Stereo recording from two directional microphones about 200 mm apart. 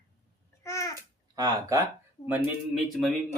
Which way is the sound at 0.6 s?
15° left (ahead or behind).